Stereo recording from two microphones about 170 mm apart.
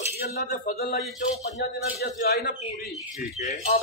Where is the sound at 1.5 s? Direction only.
70° left (ahead or behind).